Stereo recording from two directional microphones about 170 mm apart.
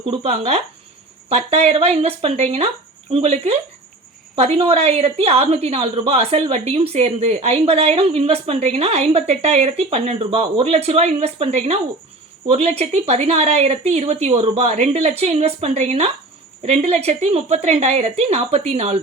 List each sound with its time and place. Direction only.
0.0 s a woman's voice: 35° right (ahead or behind)